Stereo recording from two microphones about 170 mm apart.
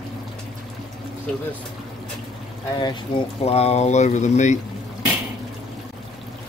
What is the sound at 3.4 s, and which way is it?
Speech, 40° left (ahead or behind).